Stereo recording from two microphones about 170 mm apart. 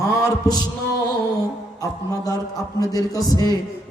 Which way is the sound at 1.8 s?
20° left (ahead or behind).